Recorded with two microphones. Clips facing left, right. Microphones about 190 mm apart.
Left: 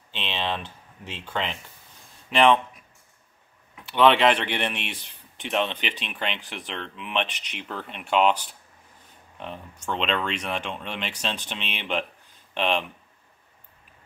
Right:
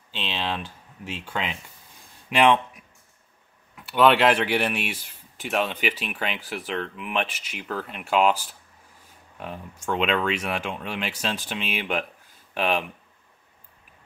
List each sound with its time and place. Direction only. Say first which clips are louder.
0.1 s speech: even; 5° right (ahead or behind)
3.7 s speech: even; 5° right (ahead or behind)